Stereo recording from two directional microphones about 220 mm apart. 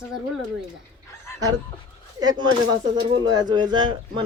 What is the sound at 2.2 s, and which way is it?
Speech, 15° right (ahead or behind).